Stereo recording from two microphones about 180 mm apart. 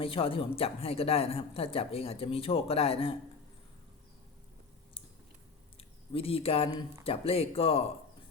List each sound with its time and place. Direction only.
0.0 s speech: 30° left (ahead or behind)
5.7 s a sound: 30° left (ahead or behind)
7.0 s speech: 35° left (ahead or behind)